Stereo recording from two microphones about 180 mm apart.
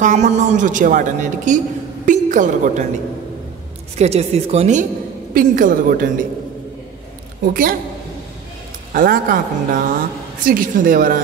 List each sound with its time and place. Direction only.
0.0 s a woman's voice: 40° right (ahead or behind)
4.0 s speech: 35° right (ahead or behind)
5.3 s a woman's voice: 50° right (ahead or behind)
7.4 s a woman's voice: 50° right (ahead or behind)
8.9 s a woman's voice: 50° right (ahead or behind)